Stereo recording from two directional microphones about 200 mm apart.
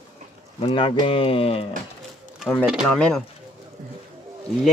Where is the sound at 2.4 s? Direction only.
5° left (ahead or behind).